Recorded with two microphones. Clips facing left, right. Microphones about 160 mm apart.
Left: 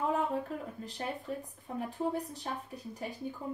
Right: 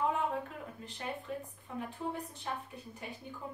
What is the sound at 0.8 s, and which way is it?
Speech, 35° left (ahead or behind).